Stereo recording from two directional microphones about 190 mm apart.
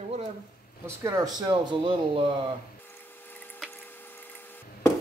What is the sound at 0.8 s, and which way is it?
Speech, 15° right (ahead or behind).